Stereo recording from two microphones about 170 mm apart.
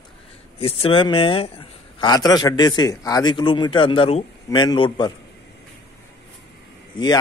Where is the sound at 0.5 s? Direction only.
35° left (ahead or behind).